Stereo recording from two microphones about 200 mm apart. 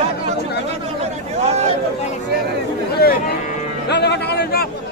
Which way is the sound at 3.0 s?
50° left (ahead or behind).